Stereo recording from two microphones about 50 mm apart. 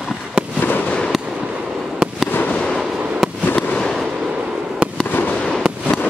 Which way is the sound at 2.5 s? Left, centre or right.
Centre.